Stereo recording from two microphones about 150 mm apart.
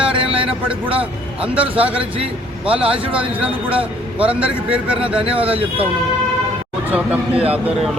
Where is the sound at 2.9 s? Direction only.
35° right (ahead or behind).